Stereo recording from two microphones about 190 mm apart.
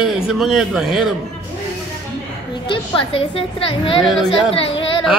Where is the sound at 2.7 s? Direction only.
30° left (ahead or behind).